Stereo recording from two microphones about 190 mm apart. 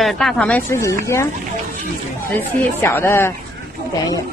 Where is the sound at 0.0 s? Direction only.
Centre (ahead or behind).